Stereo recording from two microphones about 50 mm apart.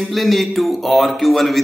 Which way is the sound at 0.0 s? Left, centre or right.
Centre.